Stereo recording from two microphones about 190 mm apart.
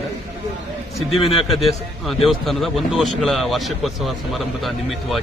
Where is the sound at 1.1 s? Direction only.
30° left (ahead or behind).